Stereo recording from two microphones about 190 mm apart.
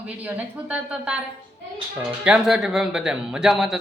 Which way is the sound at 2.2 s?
5° right (ahead or behind).